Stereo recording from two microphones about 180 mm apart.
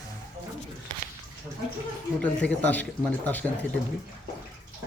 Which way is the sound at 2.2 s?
10° left (ahead or behind).